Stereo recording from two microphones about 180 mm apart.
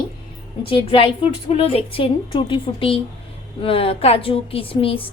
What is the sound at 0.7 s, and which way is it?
A woman's voice, 30° left (ahead or behind).